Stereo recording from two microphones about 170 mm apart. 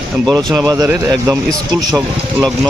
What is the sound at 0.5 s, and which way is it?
Speech, 20° right (ahead or behind).